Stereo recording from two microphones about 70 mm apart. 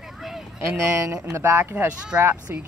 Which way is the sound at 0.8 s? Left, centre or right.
Right.